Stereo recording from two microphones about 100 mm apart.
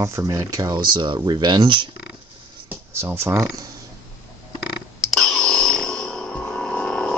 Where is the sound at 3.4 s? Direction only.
35° right (ahead or behind).